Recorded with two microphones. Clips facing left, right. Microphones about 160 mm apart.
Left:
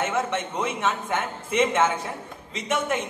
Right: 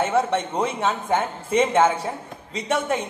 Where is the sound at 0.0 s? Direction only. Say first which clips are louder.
Right 5 dB; 35° right (ahead or behind).